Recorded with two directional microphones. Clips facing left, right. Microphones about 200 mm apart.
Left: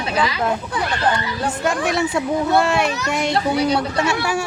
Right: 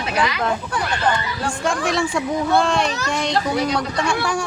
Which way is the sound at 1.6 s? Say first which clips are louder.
Left 1 dB; 5° left (ahead or behind).